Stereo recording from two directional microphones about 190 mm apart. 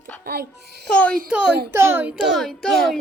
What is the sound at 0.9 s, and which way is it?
Speech, 5° left (ahead or behind).